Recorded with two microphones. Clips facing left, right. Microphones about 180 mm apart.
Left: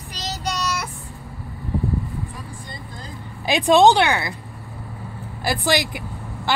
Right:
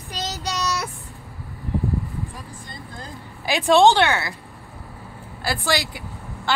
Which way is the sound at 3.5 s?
15° left (ahead or behind).